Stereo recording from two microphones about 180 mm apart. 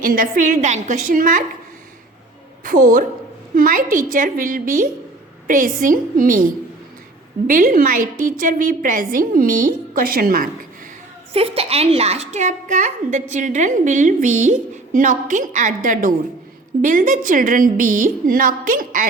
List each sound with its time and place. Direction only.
0.0 s a woman's voice: 50° right (ahead or behind)
2.6 s a woman's voice: 45° right (ahead or behind)
11.3 s a woman's voice: 35° right (ahead or behind); by 19.0 s 50° right (ahead or behind)